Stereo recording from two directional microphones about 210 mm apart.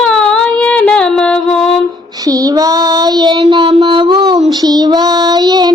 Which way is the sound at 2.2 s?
15° right (ahead or behind).